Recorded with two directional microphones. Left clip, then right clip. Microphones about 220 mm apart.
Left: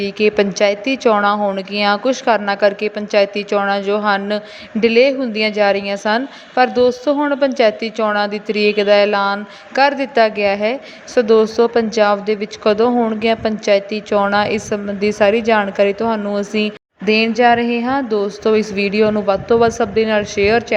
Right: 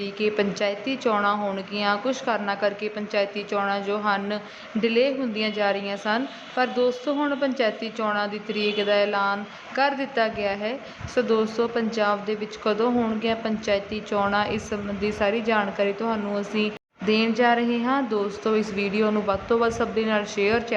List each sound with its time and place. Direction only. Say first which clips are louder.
0.0 s speech: left 9 dB; 30° left (ahead or behind)